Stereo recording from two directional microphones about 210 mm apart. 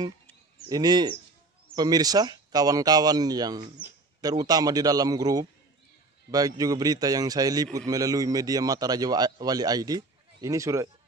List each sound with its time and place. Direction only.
0.7 s a man's voice: 20° right (ahead or behind)